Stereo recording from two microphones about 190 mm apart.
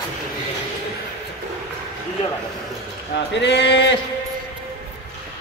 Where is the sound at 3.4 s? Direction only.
65° left (ahead or behind).